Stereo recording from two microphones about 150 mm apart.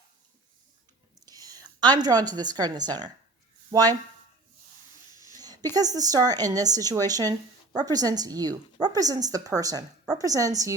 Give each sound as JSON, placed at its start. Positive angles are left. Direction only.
{"t": 1.2, "sound": "a woman's voice", "side_deg": -25}
{"t": 5.3, "sound": "a sound", "side_deg": -25}
{"t": 5.7, "sound": "a woman's voice", "side_deg": -25}